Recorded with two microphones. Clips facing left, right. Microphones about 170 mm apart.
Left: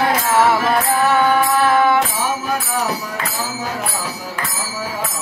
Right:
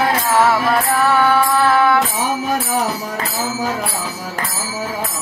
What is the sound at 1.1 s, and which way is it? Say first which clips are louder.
Mantra: right 1 dB; 20° left (ahead or behind).